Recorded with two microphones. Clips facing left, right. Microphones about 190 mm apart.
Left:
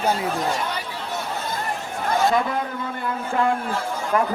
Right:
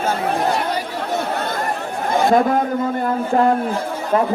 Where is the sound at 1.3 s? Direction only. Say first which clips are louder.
Right 6 dB; 65° right (ahead or behind).